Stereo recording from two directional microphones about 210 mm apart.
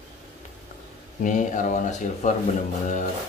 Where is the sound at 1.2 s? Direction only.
35° left (ahead or behind).